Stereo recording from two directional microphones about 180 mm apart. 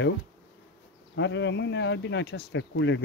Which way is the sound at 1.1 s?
80° left.